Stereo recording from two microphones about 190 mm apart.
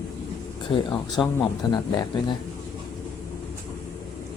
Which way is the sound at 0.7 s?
20° left (ahead or behind).